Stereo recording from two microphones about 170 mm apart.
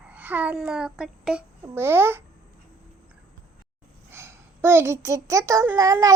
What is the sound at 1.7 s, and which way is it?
Speech, 15° right (ahead or behind).